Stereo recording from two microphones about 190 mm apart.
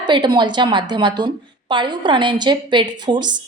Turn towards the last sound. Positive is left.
turn(degrees=-25)  # may be behind; listen again after turning